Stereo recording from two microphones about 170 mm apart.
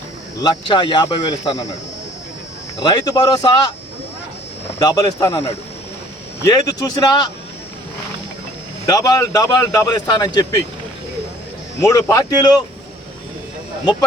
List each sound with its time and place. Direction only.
0.4 s speech: 30° left (ahead or behind)
2.9 s speech: 25° left (ahead or behind)
4.8 s speech: 20° left (ahead or behind)
8.9 s speech: 20° left (ahead or behind)
11.8 s speech: 20° left (ahead or behind)